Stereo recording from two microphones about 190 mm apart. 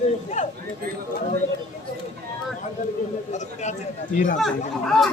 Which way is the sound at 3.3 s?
40° left (ahead or behind).